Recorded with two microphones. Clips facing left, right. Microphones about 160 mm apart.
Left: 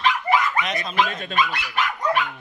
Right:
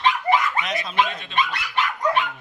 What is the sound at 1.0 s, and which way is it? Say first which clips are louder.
Speech: left 2 dB; 45° left (ahead or behind).